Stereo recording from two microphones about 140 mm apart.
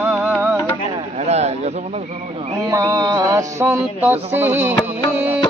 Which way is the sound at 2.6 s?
20° right (ahead or behind).